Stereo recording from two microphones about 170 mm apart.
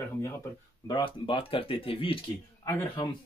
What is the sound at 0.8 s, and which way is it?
Speech, 25° left (ahead or behind).